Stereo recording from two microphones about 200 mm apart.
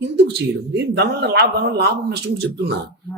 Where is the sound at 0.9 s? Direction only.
55° right (ahead or behind).